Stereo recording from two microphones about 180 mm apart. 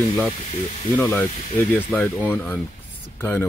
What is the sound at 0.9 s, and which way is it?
Speech, 10° left (ahead or behind).